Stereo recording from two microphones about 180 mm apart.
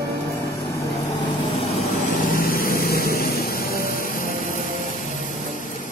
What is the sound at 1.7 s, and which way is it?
Vehicle, 40° left (ahead or behind).